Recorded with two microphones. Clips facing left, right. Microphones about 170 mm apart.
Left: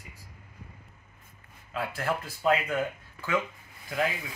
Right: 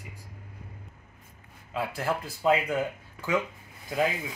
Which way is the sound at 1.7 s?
15° right (ahead or behind).